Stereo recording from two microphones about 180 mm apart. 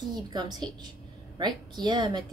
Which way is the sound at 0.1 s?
25° right (ahead or behind).